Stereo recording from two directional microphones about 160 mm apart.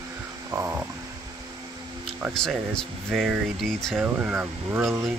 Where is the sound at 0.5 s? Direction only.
20° right (ahead or behind).